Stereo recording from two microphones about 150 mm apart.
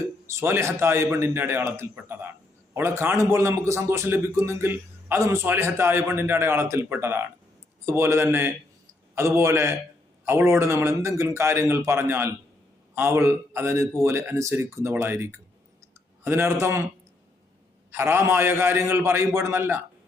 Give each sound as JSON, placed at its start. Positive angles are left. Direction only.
{"t": 0.0, "sound": "a man's voice", "side_deg": -20}
{"t": 17.9, "sound": "a man's voice", "side_deg": -15}